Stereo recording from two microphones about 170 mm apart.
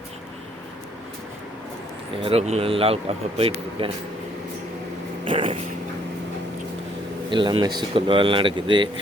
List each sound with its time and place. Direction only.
2.2 s speech: 35° right (ahead or behind)
5.2 s dog: 30° right (ahead or behind)
7.3 s speech: 30° right (ahead or behind)